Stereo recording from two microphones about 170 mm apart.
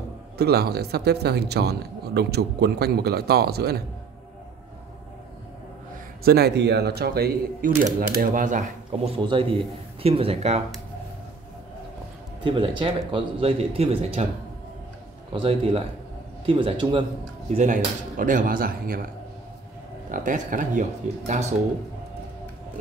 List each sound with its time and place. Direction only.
0.4 s speech: 70° right (ahead or behind)
6.2 s speech: 70° right (ahead or behind); by 9.1 s 50° right (ahead or behind)
9.2 s speech: 30° right (ahead or behind)
12.4 s speech: 30° right (ahead or behind)
15.4 s a man's voice: 35° right (ahead or behind)
17.5 s speech: 45° right (ahead or behind)
20.1 s speech: 50° right (ahead or behind)